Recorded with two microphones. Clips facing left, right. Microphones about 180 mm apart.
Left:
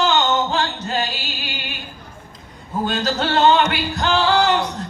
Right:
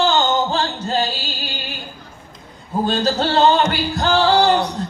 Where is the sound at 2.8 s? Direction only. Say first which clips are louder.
Right 3 dB; 35° right (ahead or behind).